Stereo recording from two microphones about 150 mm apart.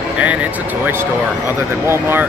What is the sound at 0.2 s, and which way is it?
Vehicle, 10° right (ahead or behind).